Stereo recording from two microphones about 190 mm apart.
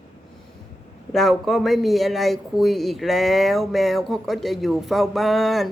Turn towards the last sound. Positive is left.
turn(degrees=0)  # may be behind; listen again after turning